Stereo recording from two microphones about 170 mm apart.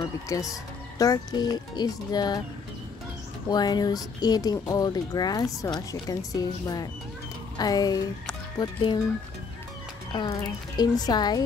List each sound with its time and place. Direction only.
0.0 s speech: 20° left (ahead or behind)
3.4 s speech: 25° left (ahead or behind)
10.1 s speech: 25° left (ahead or behind)